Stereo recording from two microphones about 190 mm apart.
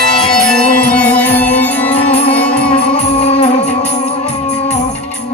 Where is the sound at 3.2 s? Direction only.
35° left (ahead or behind).